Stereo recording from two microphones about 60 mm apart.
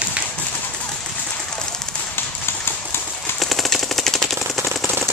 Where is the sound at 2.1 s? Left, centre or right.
Left.